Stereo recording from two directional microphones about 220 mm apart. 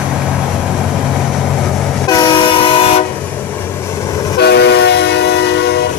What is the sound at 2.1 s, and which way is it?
Train, 20° left (ahead or behind).